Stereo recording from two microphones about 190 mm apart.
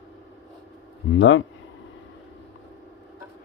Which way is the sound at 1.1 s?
85° left.